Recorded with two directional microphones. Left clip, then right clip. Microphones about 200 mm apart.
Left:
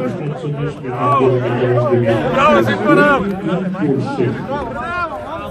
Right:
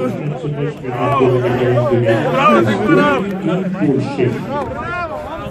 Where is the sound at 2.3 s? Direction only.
60° left (ahead or behind).